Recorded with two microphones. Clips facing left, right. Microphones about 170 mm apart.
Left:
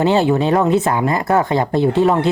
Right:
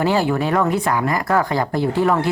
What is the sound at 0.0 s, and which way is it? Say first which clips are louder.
Speech: left 4 dB; 25° left (ahead or behind).